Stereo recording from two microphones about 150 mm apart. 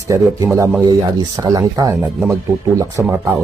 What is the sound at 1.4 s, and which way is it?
Speech, 25° right (ahead or behind).